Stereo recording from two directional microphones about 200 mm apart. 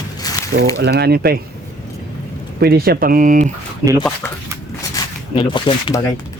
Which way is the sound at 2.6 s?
50° right (ahead or behind).